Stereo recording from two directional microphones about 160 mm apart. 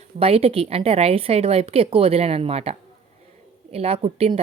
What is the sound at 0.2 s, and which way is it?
A woman's voice, 40° right (ahead or behind).